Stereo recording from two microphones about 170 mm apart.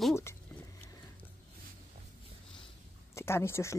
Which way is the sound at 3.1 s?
15° left (ahead or behind).